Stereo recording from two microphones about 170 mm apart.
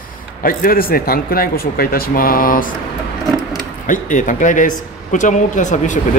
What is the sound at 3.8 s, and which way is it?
Speech, 50° left (ahead or behind).